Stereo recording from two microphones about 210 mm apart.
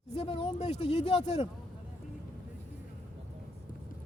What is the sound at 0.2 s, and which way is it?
Speech, 25° left (ahead or behind).